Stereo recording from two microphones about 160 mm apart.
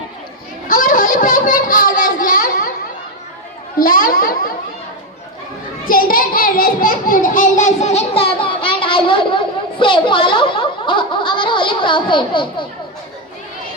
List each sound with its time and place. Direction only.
0.7 s a child's voice: 60° left (ahead or behind)
3.8 s a child's voice: 65° left (ahead or behind)
5.8 s a child's voice: 65° left (ahead or behind); by 12.6 s 30° left (ahead or behind)